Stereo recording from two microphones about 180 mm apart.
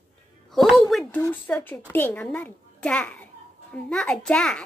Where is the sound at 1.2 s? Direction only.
10° left (ahead or behind).